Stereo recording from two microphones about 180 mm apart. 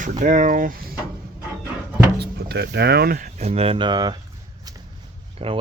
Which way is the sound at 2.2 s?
65° right (ahead or behind).